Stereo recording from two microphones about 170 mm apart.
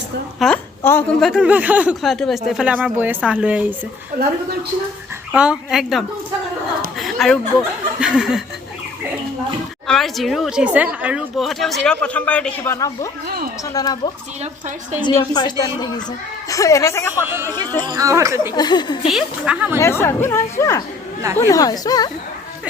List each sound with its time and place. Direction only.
0.3 s speech: 5° left (ahead or behind)
0.8 s a woman's voice: 15° left (ahead or behind)
1.2 s speech: 5° right (ahead or behind)
4.1 s a woman's voice: 70° right (ahead or behind)
5.3 s speech: 5° right (ahead or behind)
9.8 s a woman's voice: centre (ahead or behind)
17.2 s speech: 15° right (ahead or behind)
18.5 s a woman's voice: 25° left (ahead or behind)
19.1 s speech: 5° right (ahead or behind)
19.8 s a woman's voice: 15° left (ahead or behind)